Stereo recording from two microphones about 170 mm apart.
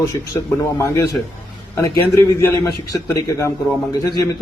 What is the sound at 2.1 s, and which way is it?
A man's voice, 20° left (ahead or behind).